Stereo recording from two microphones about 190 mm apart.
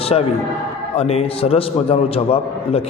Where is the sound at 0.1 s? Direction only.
30° left (ahead or behind).